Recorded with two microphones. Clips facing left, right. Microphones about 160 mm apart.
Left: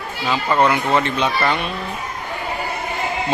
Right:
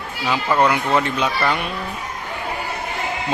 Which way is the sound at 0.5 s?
10° right (ahead or behind).